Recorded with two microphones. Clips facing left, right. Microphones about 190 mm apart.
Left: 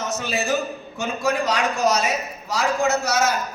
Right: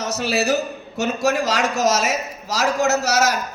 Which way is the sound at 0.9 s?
80° right.